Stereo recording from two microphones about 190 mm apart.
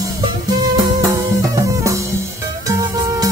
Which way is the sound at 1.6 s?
15° right (ahead or behind).